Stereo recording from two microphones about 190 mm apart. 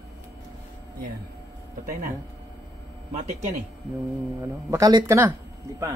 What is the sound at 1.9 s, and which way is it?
Speech, 45° right (ahead or behind).